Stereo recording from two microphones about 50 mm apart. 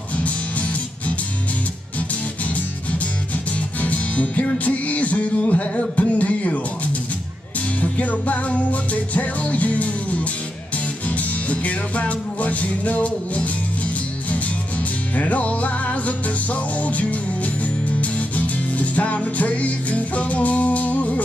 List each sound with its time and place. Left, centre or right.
0.2 s music: left
3.8 s music: left
7.8 s music: left
15.1 s music: left